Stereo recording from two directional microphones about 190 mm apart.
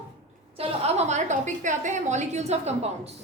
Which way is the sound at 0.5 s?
35° right (ahead or behind).